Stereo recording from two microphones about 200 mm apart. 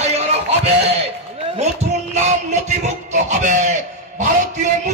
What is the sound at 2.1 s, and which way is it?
A man's voice, 35° right (ahead or behind).